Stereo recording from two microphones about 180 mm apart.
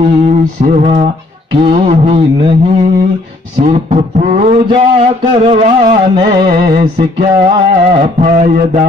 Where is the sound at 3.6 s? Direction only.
45° right (ahead or behind).